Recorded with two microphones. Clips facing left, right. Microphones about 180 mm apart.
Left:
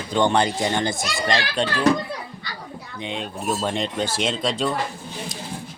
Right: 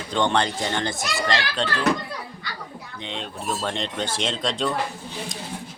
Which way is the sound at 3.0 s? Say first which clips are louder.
Left 4 dB; 10° left (ahead or behind).